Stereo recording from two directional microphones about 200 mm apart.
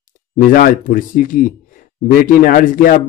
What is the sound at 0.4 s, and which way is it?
A man's voice, 40° left (ahead or behind).